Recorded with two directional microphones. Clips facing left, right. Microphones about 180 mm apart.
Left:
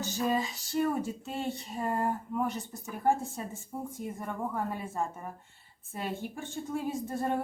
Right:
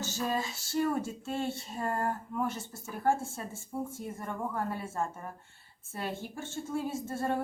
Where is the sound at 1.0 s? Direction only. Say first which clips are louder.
Even; 15° left (ahead or behind).